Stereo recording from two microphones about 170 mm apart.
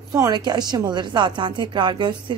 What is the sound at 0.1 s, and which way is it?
A woman's voice, 25° right (ahead or behind).